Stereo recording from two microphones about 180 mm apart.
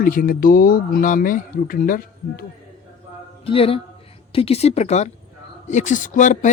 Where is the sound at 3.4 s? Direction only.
30° left (ahead or behind).